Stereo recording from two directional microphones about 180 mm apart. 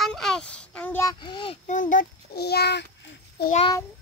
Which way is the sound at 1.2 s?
30° left (ahead or behind).